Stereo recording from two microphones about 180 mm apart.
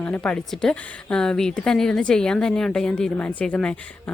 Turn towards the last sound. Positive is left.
turn(degrees=5)  # may be behind; listen again after turning